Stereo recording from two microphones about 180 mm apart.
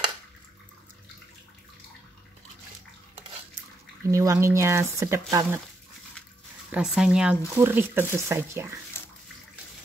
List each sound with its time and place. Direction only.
4.1 s speech: 15° right (ahead or behind)
6.7 s speech: 5° right (ahead or behind)